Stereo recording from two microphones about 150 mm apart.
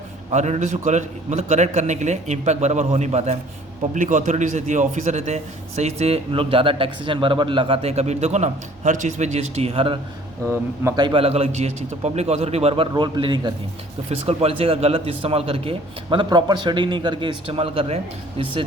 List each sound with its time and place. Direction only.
0.3 s a man's voice: 50° right (ahead or behind)
10.4 s speech: 15° right (ahead or behind)
11.0 s a man's voice: 35° right (ahead or behind)